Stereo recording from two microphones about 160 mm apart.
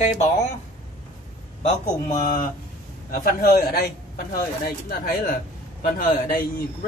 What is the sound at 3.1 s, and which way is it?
A man's voice, 65° left (ahead or behind).